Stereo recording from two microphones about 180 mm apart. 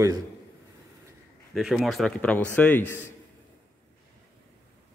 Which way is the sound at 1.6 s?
Centre (ahead or behind).